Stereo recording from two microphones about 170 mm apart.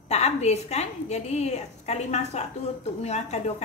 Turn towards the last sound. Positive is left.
turn(degrees=40)  # may be behind; listen again after turning